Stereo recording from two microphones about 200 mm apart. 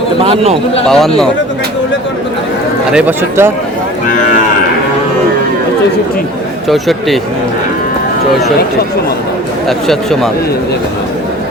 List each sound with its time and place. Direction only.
0.2 s a man's voice: 30° right (ahead or behind)
0.9 s speech: centre (ahead or behind)
2.9 s speech: 10° right (ahead or behind)
6.7 s speech: centre (ahead or behind)
9.6 s speech: centre (ahead or behind)